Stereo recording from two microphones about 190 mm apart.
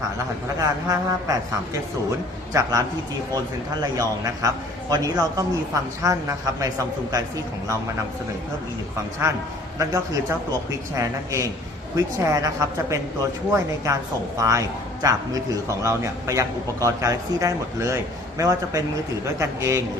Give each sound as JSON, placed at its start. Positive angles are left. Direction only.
{"t": 0.6, "sound": "a man's voice", "side_deg": -20}
{"t": 2.5, "sound": "a man's voice", "side_deg": -15}
{"t": 9.2, "sound": "a man's voice", "side_deg": -15}